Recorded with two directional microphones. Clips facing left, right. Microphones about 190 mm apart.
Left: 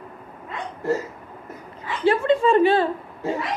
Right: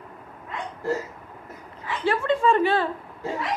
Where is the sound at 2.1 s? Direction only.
25° left (ahead or behind).